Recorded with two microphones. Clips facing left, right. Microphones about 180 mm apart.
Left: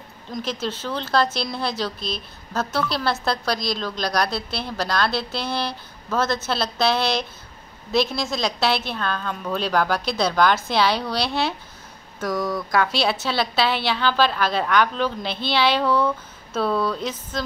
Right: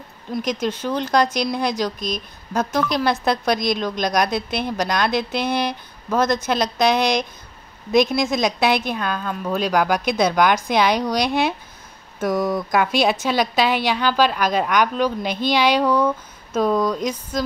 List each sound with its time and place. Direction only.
0.3 s speech: 15° right (ahead or behind)